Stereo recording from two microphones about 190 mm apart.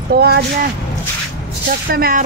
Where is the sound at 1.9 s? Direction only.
50° right (ahead or behind).